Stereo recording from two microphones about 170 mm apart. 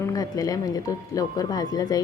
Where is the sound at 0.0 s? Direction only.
20° left (ahead or behind).